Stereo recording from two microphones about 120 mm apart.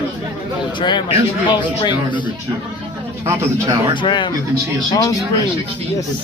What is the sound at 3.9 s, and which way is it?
Speech, 40° left (ahead or behind).